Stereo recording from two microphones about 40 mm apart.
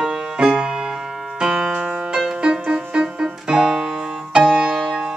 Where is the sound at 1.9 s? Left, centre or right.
Right.